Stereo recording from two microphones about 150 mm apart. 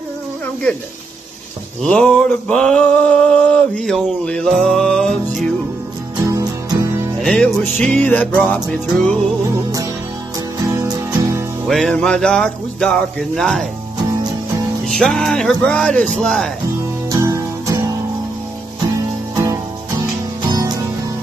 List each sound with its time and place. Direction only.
1.8 s male singing: 5° left (ahead or behind)
6.2 s music: 25° right (ahead or behind)
7.2 s male singing: 5° left (ahead or behind)
8.0 s music: 10° left (ahead or behind)
10.7 s music: 20° right (ahead or behind)
11.6 s male singing: centre (ahead or behind)
14.9 s male singing: 5° left (ahead or behind)
17.1 s music: 25° right (ahead or behind)
19.3 s music: 20° right (ahead or behind)